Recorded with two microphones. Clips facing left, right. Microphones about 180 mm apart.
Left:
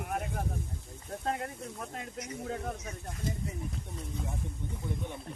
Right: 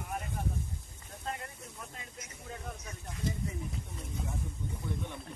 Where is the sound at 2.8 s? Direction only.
50° left (ahead or behind).